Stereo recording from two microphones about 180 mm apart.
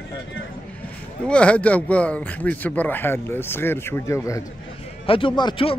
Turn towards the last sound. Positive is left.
turn(degrees=30)  # may be behind; listen again after turning